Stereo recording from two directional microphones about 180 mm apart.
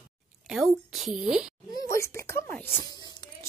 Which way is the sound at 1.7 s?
20° left (ahead or behind).